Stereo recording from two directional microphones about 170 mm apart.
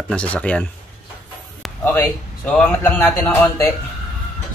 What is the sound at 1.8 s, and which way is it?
Speech, 10° left (ahead or behind).